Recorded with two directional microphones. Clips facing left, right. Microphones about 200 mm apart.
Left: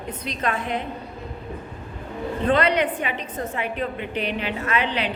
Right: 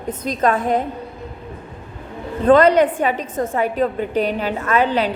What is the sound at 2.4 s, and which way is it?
A woman's voice, 45° right (ahead or behind).